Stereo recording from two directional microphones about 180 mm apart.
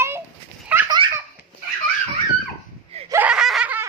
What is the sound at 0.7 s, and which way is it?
Belly laugh, 10° right (ahead or behind).